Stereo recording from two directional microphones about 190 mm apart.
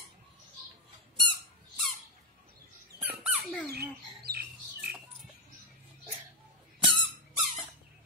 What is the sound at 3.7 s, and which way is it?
Squawk, 55° right (ahead or behind).